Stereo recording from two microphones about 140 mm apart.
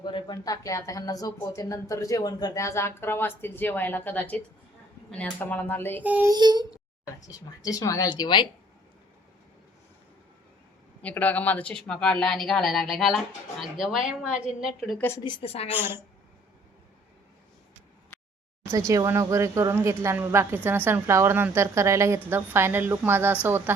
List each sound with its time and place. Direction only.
0.0 s speech: 35° left (ahead or behind); by 6.0 s 15° left (ahead or behind)
6.0 s a woman's voice: 10° right (ahead or behind)
6.2 s a woman's voice: 30° right (ahead or behind)
7.3 s speech: 25° left (ahead or behind)
11.0 s speech: 10° left (ahead or behind)
14.9 s speech: 15° left (ahead or behind)
15.2 s a woman's voice: 35° left (ahead or behind)
15.7 s a woman's voice: 15° right (ahead or behind)
18.9 s a woman's voice: 20° right (ahead or behind)